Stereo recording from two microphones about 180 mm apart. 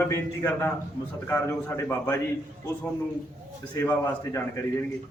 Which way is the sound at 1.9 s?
10° left (ahead or behind).